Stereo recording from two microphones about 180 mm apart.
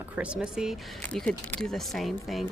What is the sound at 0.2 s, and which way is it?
Speech, 5° right (ahead or behind).